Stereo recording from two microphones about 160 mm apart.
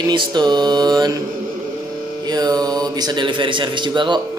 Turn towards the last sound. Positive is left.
turn(degrees=-30)  # may be behind; listen again after turning